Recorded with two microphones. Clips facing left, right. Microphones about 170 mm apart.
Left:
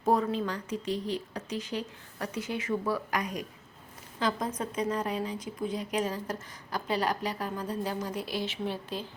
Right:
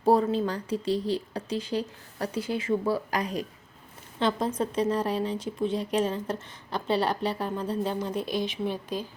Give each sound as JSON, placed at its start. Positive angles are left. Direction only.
{"t": 0.0, "sound": "speech", "side_deg": -30}